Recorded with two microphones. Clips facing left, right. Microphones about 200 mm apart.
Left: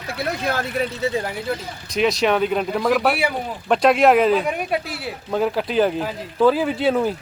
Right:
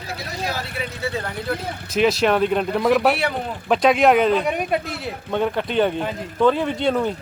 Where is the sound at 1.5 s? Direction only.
Centre (ahead or behind).